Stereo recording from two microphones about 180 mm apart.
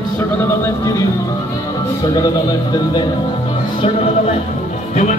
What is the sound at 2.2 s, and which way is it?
Speech, 25° left (ahead or behind).